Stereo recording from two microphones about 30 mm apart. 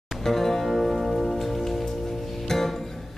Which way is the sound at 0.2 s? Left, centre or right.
Centre.